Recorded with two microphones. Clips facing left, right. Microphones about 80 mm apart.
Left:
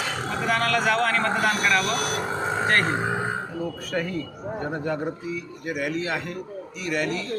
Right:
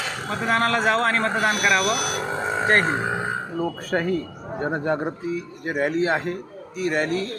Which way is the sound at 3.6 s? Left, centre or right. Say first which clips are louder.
Right 4 dB; right.